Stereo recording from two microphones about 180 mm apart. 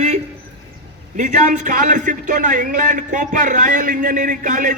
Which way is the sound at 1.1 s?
45° right (ahead or behind).